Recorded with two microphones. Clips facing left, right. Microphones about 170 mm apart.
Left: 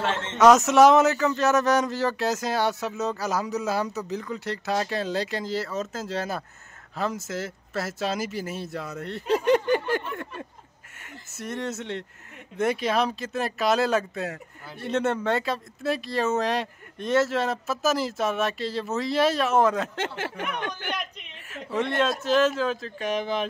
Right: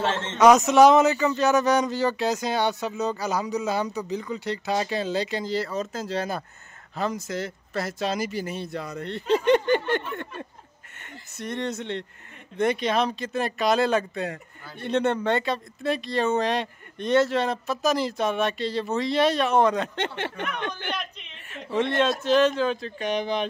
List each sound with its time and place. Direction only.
0.0 s a man's voice: 30° right (ahead or behind)
0.4 s speech: centre (ahead or behind)